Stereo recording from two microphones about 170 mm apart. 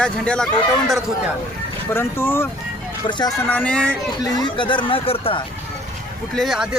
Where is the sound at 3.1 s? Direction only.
25° left (ahead or behind).